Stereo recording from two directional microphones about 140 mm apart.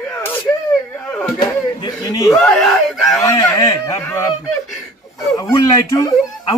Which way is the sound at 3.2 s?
25° left (ahead or behind).